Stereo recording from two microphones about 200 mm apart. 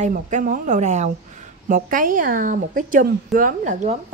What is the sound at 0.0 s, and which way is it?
A woman's voice, 40° right (ahead or behind).